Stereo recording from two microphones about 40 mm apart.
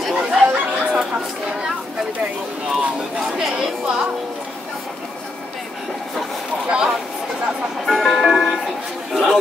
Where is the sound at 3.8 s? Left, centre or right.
Centre.